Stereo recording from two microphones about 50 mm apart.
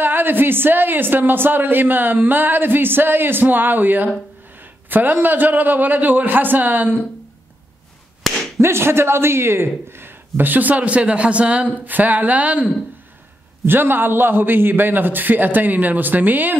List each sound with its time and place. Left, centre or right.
0.0 s a man's voice: right
8.2 s whip: centre
8.5 s speech: right
11.8 s a man's voice: right
13.7 s a man's voice: right